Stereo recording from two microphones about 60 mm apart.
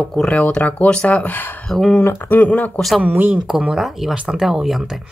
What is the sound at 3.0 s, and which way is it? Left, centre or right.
Speech, right.